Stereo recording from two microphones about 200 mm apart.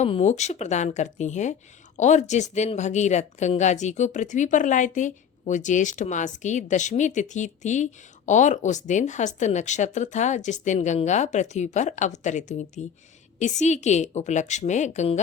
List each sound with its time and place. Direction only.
0.0 s speech: 35° left (ahead or behind)